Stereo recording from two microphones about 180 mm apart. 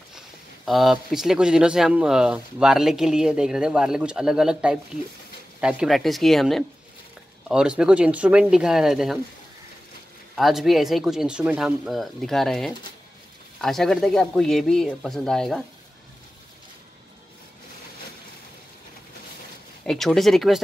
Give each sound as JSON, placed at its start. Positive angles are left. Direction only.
{"t": 0.7, "sound": "speech", "side_deg": 0}
{"t": 10.3, "sound": "speech", "side_deg": 0}
{"t": 19.8, "sound": "speech", "side_deg": 5}